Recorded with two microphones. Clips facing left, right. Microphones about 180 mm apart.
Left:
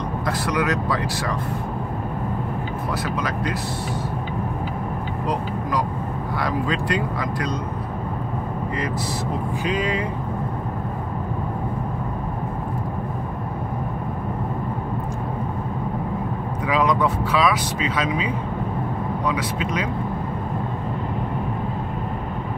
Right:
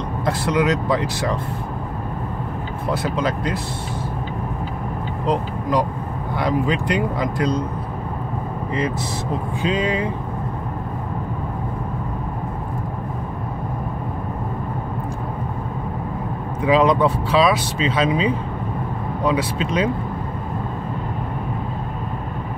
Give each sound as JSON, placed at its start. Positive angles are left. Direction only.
{"t": 0.2, "sound": "speech", "side_deg": -25}
{"t": 2.9, "sound": "speech", "side_deg": -25}
{"t": 5.2, "sound": "speech", "side_deg": -25}
{"t": 9.6, "sound": "speech", "side_deg": -25}
{"t": 16.6, "sound": "speech", "side_deg": -25}